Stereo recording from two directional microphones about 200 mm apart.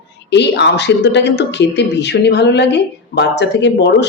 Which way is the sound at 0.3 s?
60° left (ahead or behind).